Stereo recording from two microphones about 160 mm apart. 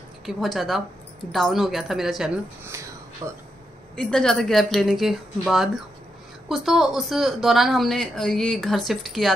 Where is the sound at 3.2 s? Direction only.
25° right (ahead or behind).